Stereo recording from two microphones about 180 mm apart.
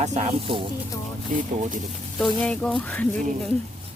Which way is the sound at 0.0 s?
40° right (ahead or behind).